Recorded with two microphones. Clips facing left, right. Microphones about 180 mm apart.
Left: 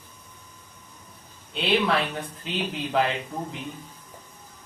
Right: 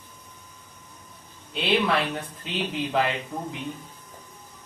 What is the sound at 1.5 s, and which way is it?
A man's voice, centre (ahead or behind).